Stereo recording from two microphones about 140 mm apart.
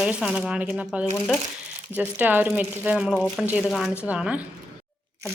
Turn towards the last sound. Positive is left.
turn(degrees=-10)  # may be behind; listen again after turning